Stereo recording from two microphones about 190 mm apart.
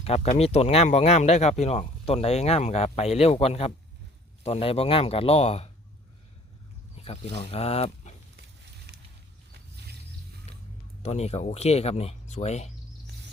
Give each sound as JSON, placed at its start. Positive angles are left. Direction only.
{"t": 0.0, "sound": "speech", "side_deg": 35}
{"t": 6.9, "sound": "speech", "side_deg": 35}
{"t": 8.9, "sound": "a sound", "side_deg": -60}
{"t": 11.0, "sound": "speech", "side_deg": 35}